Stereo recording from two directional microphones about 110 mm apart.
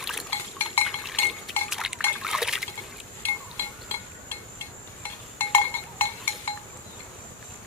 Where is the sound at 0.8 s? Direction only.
Centre (ahead or behind).